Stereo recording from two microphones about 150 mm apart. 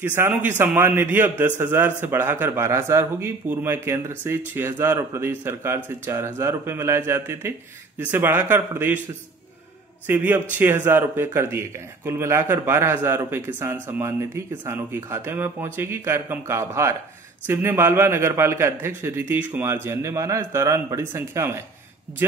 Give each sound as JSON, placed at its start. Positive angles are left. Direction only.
{"t": 0.0, "sound": "a man's voice", "side_deg": -15}
{"t": 10.0, "sound": "a man's voice", "side_deg": -15}